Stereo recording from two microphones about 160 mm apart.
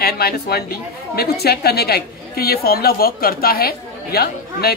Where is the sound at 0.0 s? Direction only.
75° left (ahead or behind).